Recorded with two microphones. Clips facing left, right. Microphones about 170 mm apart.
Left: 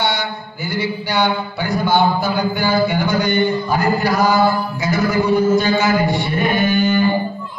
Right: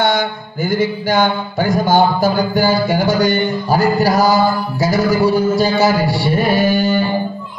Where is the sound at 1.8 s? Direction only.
40° right (ahead or behind).